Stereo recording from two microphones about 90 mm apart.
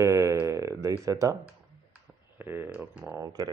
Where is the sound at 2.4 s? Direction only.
25° right (ahead or behind).